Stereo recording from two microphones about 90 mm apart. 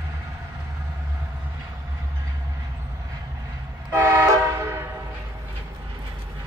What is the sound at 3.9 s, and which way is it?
Vehicle, 30° right (ahead or behind).